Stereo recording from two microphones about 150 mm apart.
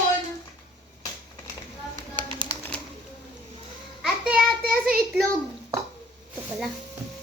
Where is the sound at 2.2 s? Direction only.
35° right (ahead or behind).